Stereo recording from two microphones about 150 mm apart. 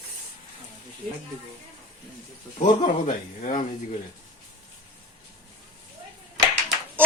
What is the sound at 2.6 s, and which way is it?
Speech, 60° left (ahead or behind).